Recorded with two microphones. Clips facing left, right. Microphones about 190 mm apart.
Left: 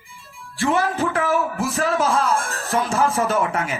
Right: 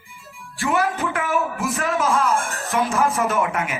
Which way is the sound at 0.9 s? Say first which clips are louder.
Left 4 dB; 35° left (ahead or behind).